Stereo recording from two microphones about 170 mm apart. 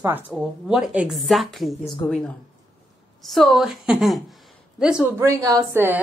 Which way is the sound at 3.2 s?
Centre (ahead or behind).